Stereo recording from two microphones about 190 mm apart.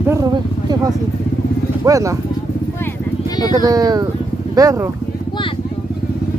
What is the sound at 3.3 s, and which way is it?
Speech, 20° left (ahead or behind).